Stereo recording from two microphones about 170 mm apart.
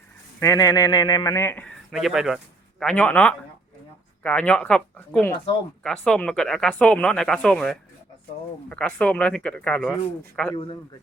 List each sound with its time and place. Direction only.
0.3 s a man's voice: 20° left (ahead or behind)
1.6 s a man's voice: centre (ahead or behind)
10.5 s a man's voice: 30° left (ahead or behind)